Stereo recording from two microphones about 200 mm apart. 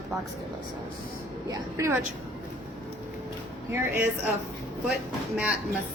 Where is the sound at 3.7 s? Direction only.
10° right (ahead or behind).